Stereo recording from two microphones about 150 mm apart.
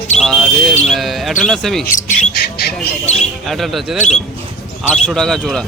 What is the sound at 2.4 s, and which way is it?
Squawk, 90° left.